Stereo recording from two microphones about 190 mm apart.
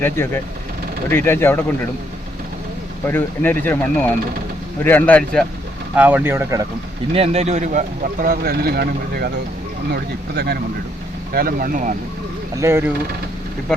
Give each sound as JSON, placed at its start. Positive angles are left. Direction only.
{"t": 0.2, "sound": "speech", "side_deg": 15}
{"t": 3.1, "sound": "speech", "side_deg": 10}
{"t": 6.0, "sound": "speech", "side_deg": -10}
{"t": 7.1, "sound": "speech", "side_deg": -30}
{"t": 12.5, "sound": "speech", "side_deg": -15}